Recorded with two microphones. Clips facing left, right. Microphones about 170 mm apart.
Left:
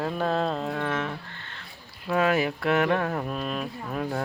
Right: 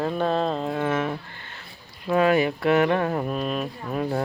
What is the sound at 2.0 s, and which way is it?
Speech, centre (ahead or behind).